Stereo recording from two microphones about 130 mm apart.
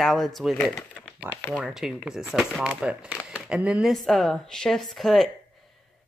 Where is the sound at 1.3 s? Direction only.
15° left (ahead or behind).